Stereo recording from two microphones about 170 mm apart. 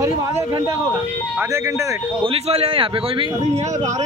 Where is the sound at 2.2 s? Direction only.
35° right (ahead or behind).